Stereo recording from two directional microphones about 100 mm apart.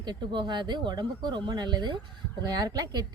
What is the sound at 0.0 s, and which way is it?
Speech, 50° right (ahead or behind).